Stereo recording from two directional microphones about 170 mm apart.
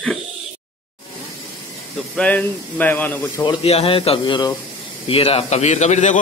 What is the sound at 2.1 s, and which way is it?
Speech, 10° left (ahead or behind).